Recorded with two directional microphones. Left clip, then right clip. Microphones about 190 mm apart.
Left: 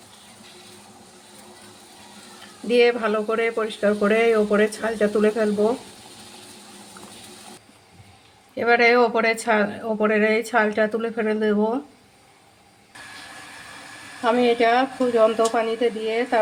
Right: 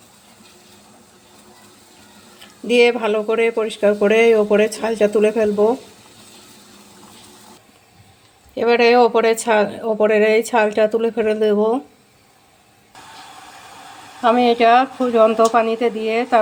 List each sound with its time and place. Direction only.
2.6 s speech: 25° right (ahead or behind)
8.5 s speech: 25° right (ahead or behind)
14.2 s speech: 25° right (ahead or behind)